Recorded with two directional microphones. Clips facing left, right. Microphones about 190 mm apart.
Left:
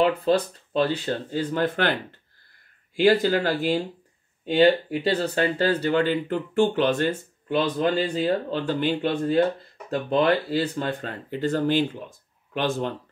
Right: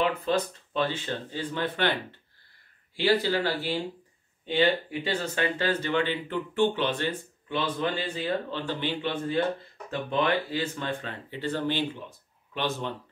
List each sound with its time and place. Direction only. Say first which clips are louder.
0.0 s speech: left 5 dB; 35° left (ahead or behind)
3.0 s speech: left 5 dB; 45° left (ahead or behind)